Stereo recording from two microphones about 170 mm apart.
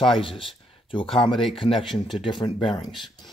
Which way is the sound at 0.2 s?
30° left (ahead or behind).